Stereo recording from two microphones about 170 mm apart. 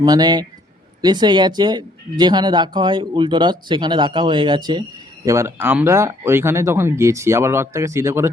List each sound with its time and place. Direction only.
0.0 s speech: 25° right (ahead or behind)